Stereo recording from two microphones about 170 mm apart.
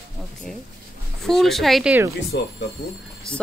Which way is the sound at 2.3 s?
90° left.